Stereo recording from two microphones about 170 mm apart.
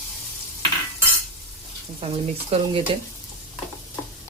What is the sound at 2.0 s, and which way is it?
Speech, 35° right (ahead or behind).